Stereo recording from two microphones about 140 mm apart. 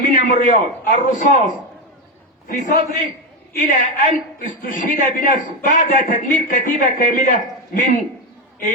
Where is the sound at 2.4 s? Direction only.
80° left.